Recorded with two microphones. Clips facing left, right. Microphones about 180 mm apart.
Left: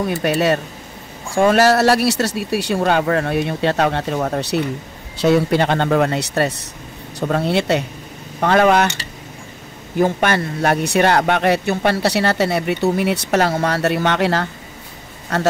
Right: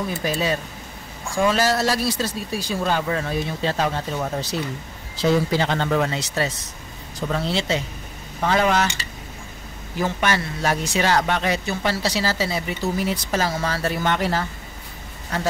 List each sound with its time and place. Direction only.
0.1 s speech: 70° left (ahead or behind)
9.9 s speech: 55° left (ahead or behind); by 14.5 s 75° left (ahead or behind)